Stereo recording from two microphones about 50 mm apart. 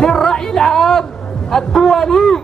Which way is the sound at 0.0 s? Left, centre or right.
Centre.